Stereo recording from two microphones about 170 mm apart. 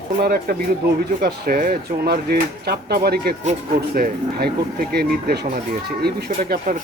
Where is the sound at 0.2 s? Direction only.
60° right (ahead or behind).